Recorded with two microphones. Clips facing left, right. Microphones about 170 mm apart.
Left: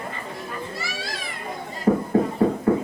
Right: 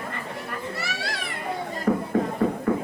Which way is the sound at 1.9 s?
30° left (ahead or behind).